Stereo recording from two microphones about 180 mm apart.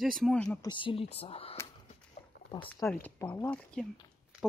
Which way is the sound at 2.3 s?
75° left (ahead or behind).